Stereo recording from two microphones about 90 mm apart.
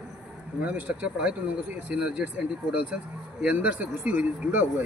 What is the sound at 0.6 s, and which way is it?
Speech, 15° right (ahead or behind).